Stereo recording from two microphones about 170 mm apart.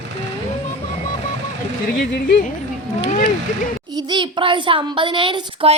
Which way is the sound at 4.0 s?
25° right (ahead or behind).